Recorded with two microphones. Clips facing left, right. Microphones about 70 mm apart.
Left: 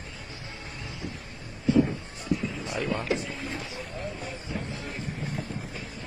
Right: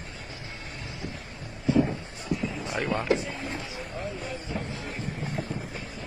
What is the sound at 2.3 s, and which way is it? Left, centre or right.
Music, centre.